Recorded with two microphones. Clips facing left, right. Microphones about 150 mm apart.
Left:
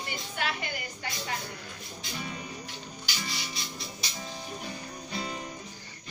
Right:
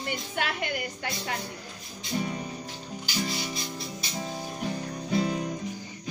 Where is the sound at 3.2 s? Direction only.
40° right (ahead or behind).